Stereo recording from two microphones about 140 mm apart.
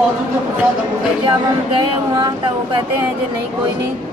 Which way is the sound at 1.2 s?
35° right (ahead or behind).